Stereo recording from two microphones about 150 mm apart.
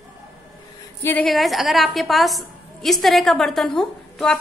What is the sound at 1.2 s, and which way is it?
A woman's voice, centre (ahead or behind).